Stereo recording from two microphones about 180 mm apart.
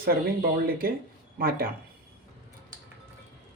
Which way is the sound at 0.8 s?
50° right (ahead or behind).